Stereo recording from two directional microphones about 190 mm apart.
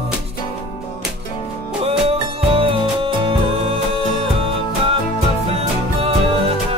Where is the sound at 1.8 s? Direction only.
30° right (ahead or behind).